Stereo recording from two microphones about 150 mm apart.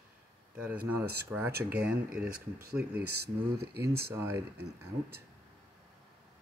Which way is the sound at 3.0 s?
90° right.